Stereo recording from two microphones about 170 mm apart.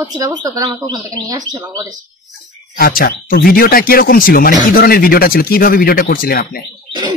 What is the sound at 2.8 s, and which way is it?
Speech, 60° left (ahead or behind).